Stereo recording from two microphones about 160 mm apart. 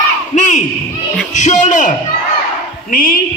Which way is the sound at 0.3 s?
50° left (ahead or behind).